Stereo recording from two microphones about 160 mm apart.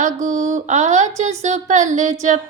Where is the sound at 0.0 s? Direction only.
50° right (ahead or behind).